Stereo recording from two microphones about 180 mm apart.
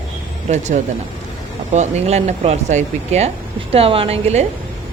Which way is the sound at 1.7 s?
40° right (ahead or behind).